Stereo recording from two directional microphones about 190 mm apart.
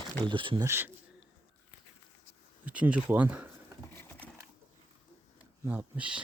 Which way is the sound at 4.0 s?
10° left (ahead or behind).